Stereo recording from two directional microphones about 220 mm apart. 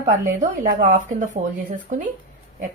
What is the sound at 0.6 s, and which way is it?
Speech, 35° right (ahead or behind).